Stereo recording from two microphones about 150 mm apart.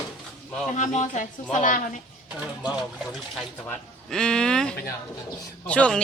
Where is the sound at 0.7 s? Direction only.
55° left (ahead or behind).